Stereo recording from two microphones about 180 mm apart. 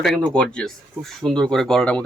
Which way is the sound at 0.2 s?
5° left (ahead or behind).